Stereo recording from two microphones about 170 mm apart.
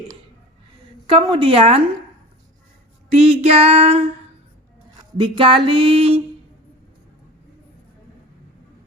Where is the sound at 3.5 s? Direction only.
35° right (ahead or behind).